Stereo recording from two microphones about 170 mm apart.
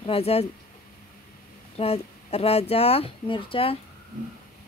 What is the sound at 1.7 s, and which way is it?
Speech, 35° left (ahead or behind).